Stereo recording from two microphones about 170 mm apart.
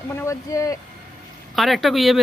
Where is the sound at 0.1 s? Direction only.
15° left (ahead or behind).